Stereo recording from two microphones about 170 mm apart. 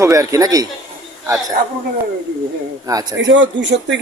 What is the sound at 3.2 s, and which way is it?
Speech, 90° right.